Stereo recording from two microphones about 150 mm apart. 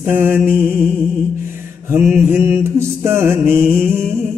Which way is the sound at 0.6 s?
5° left (ahead or behind).